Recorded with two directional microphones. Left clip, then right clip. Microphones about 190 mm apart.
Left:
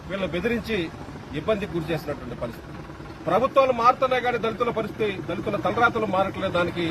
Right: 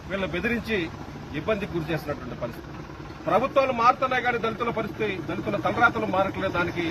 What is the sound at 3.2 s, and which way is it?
A man's voice, 15° left (ahead or behind).